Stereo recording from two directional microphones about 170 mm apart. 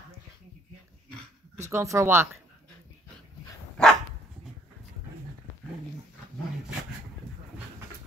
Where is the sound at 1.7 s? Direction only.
15° right (ahead or behind).